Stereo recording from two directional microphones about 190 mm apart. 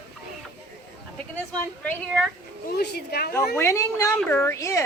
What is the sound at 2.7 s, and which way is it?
Speech, 55° left (ahead or behind).